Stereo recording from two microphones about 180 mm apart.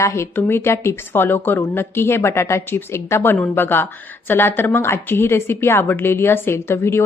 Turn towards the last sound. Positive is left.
turn(degrees=15)  # may be behind; listen again after turning